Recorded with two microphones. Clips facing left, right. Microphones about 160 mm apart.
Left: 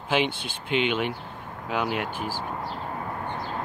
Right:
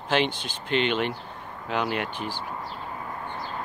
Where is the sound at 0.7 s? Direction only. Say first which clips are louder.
Even; 10° left (ahead or behind).